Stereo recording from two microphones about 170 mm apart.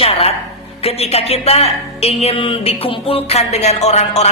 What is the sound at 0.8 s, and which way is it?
A woman's voice, 35° left (ahead or behind).